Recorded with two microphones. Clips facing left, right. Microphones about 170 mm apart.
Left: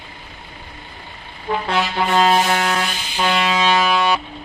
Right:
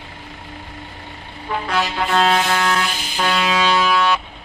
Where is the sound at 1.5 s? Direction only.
40° left (ahead or behind).